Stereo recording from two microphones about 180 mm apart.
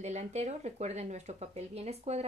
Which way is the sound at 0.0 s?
40° right (ahead or behind).